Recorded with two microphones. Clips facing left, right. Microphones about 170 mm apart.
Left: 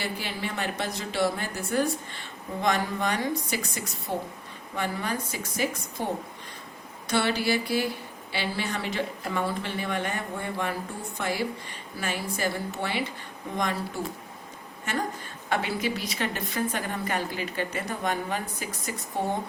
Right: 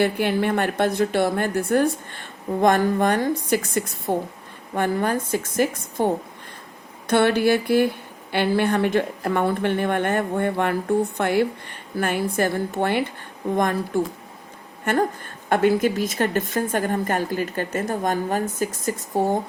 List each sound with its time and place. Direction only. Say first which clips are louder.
0.0 s a woman's voice: right 12 dB; 55° right (ahead or behind)
7.1 s a woman's voice: right 8 dB; 55° right (ahead or behind)